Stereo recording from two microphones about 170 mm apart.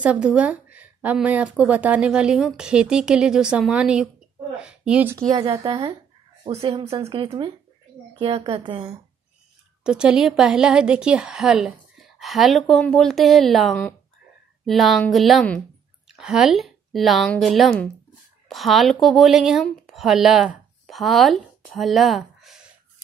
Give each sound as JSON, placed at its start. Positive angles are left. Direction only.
{"t": 0.0, "sound": "a woman's voice", "side_deg": -5}
{"t": 6.4, "sound": "speech", "side_deg": -35}
{"t": 9.8, "sound": "a woman's voice", "side_deg": -5}
{"t": 21.7, "sound": "a sound", "side_deg": 0}